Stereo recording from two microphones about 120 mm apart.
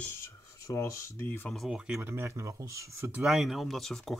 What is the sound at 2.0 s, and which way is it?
Speech, 20° right (ahead or behind).